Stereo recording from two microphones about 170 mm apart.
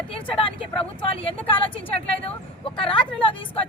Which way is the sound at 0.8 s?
30° left (ahead or behind).